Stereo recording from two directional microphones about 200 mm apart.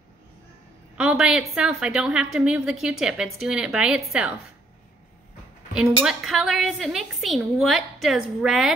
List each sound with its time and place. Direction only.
0.9 s a woman's voice: 5° right (ahead or behind)
5.8 s a woman's voice: centre (ahead or behind)